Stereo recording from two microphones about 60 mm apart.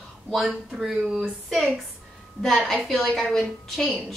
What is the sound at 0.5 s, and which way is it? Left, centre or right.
Speech, centre.